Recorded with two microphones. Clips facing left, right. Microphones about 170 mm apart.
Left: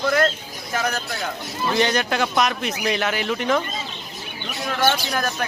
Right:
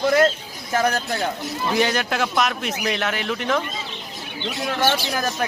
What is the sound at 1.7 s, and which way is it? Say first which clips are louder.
Speech: left 1 dB; 5° right (ahead or behind).